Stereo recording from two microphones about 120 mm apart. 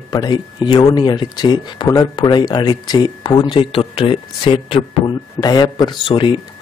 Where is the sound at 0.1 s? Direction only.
35° left (ahead or behind).